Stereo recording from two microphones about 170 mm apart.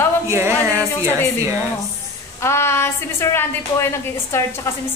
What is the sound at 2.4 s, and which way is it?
A woman's voice, 15° left (ahead or behind).